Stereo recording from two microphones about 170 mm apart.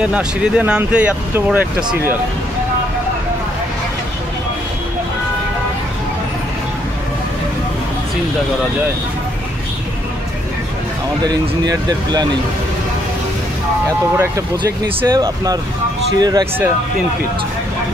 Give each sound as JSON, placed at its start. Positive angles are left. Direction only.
{"t": 0.0, "sound": "speech", "side_deg": -5}
{"t": 11.2, "sound": "speech", "side_deg": -25}
{"t": 14.1, "sound": "speech", "side_deg": -15}